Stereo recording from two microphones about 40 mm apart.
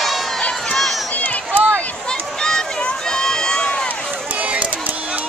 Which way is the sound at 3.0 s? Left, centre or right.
Centre.